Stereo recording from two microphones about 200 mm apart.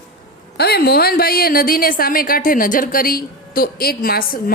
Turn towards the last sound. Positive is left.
turn(degrees=50)  # may be behind; listen again after turning